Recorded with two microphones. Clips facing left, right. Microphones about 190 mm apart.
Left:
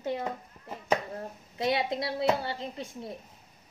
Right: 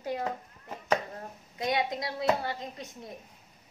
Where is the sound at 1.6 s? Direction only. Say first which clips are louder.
Left 2 dB; 30° left (ahead or behind).